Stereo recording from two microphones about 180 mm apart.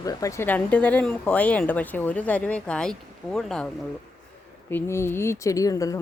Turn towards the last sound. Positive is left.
turn(degrees=20)  # may be behind; listen again after turning